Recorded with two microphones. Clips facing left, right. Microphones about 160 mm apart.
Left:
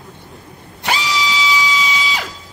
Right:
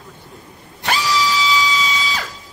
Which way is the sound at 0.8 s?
20° left (ahead or behind).